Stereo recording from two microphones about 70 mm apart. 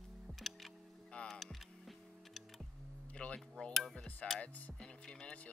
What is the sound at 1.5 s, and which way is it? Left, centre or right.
Music, centre.